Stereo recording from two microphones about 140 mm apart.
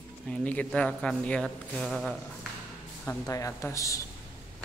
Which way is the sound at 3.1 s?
20° left (ahead or behind).